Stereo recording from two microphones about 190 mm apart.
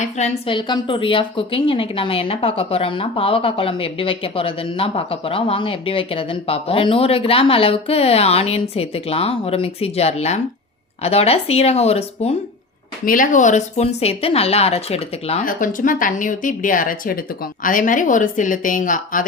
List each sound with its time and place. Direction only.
0.0 s a woman's voice: 30° left (ahead or behind)
13.1 s speech: 45° left (ahead or behind)
15.4 s a woman's voice: 45° left (ahead or behind)